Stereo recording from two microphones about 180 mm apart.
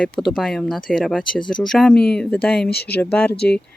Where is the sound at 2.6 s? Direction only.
60° left (ahead or behind).